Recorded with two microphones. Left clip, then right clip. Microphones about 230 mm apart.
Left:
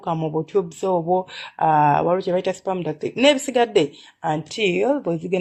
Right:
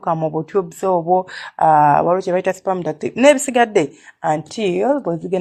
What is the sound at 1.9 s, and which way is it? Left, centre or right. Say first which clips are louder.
Speech: right 4 dB; centre.